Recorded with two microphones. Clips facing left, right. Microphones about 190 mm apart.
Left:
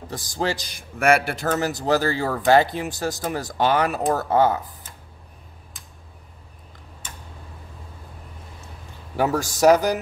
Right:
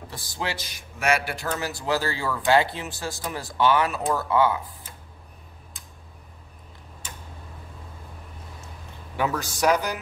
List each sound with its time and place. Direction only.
0.1 s a man's voice: 45° left (ahead or behind)
9.1 s a man's voice: 40° left (ahead or behind)